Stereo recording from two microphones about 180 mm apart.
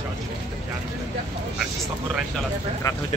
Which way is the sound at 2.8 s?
20° left (ahead or behind).